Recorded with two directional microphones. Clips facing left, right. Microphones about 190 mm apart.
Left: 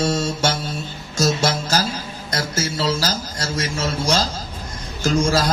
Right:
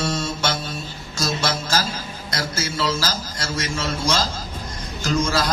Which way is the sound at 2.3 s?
40° left (ahead or behind).